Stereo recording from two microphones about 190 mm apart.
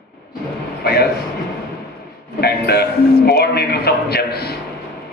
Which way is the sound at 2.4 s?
55° left (ahead or behind).